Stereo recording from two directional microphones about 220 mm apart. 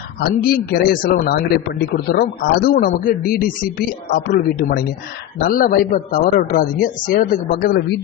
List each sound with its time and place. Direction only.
0.2 s a man's voice: 45° left (ahead or behind)